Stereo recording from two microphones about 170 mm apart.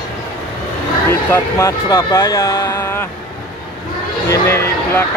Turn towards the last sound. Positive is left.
turn(degrees=15)  # may be behind; listen again after turning